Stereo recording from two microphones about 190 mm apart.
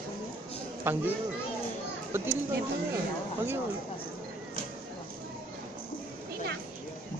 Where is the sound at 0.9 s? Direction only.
10° right (ahead or behind).